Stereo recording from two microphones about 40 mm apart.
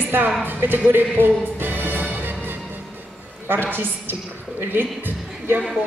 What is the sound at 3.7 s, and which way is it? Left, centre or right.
Speech, right.